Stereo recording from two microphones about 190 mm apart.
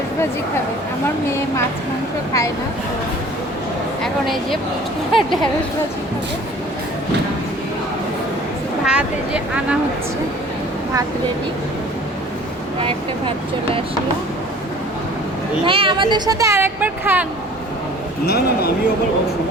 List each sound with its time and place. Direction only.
4.0 s speech: centre (ahead or behind)
8.9 s speech: 5° right (ahead or behind)
12.8 s speech: 30° right (ahead or behind)
15.6 s speech: 25° right (ahead or behind); by 17.2 s 10° right (ahead or behind)
18.3 s speech: 55° left (ahead or behind)